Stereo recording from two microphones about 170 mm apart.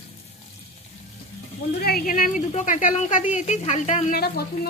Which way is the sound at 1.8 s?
65° left (ahead or behind).